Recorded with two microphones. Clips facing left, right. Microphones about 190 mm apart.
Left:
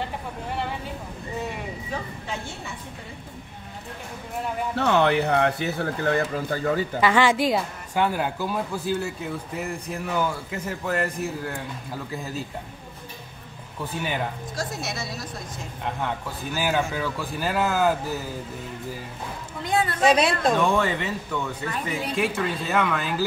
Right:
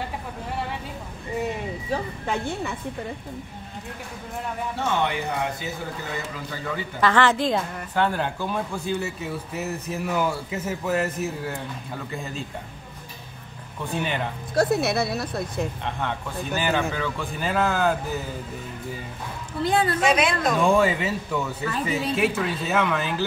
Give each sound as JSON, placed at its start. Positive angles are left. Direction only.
{"t": 4.7, "sound": "speech", "side_deg": 70}
{"t": 7.0, "sound": "speech", "side_deg": 10}
{"t": 14.5, "sound": "speech", "side_deg": -60}
{"t": 15.8, "sound": "speech", "side_deg": 5}
{"t": 19.6, "sound": "a woman's voice", "side_deg": -30}
{"t": 20.0, "sound": "a woman's voice", "side_deg": 35}
{"t": 20.7, "sound": "a man's voice", "side_deg": -10}